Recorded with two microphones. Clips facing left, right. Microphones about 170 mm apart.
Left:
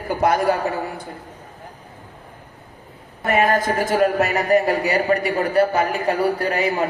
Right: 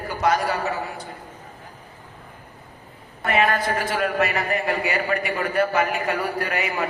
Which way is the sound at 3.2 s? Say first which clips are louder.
Left 3 dB; 45° left (ahead or behind).